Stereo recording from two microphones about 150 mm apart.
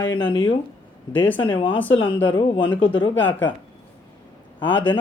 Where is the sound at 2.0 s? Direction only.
35° left (ahead or behind).